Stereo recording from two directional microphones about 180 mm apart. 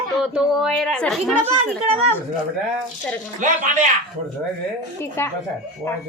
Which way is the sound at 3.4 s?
45° right (ahead or behind).